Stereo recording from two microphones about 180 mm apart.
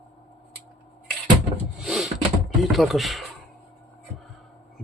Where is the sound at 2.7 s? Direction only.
Centre (ahead or behind).